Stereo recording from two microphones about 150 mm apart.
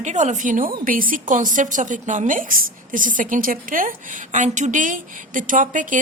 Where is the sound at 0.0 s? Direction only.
50° right (ahead or behind).